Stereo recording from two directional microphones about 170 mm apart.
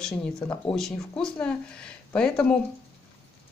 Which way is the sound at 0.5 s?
5° left (ahead or behind).